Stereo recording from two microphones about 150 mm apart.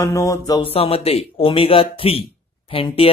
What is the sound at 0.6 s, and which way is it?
Speech, 40° left (ahead or behind).